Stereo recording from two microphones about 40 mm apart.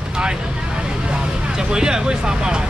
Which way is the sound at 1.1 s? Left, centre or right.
Centre.